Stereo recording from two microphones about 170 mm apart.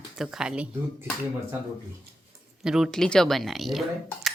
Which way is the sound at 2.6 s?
Centre (ahead or behind).